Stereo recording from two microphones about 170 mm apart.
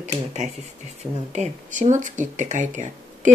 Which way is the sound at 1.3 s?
45° right (ahead or behind).